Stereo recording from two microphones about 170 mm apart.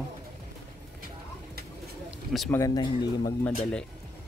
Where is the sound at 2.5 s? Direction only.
20° left (ahead or behind).